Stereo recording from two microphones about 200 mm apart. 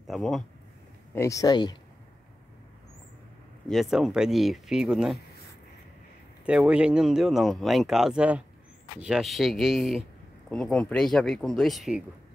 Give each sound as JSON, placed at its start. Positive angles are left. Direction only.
{"t": 0.0, "sound": "speech", "side_deg": 0}
{"t": 1.1, "sound": "speech", "side_deg": 15}
{"t": 3.6, "sound": "speech", "side_deg": 0}
{"t": 6.4, "sound": "speech", "side_deg": -5}